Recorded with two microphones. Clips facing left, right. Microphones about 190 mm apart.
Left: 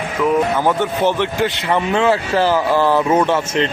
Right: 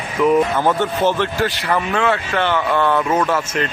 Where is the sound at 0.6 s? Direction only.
15° left (ahead or behind).